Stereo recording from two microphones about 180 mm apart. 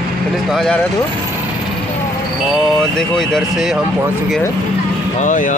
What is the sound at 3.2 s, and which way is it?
Speech, centre (ahead or behind).